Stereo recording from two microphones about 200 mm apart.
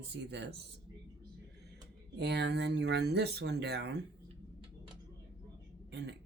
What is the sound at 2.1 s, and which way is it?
Speech, 55° right (ahead or behind).